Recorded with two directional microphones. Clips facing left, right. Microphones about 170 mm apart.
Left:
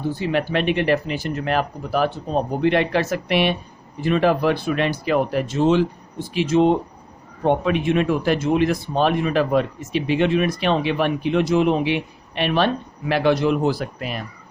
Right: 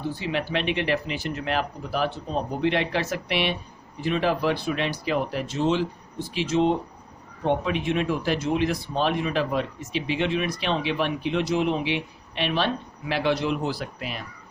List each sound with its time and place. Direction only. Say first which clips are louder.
0.2 s speech: left 7 dB; 50° left (ahead or behind)